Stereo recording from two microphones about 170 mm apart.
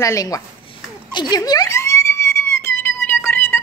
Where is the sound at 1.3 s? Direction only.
25° left (ahead or behind).